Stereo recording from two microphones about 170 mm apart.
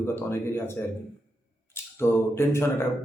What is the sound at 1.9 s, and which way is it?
Speech, 15° left (ahead or behind).